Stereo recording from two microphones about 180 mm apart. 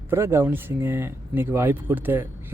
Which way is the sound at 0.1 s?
15° right (ahead or behind).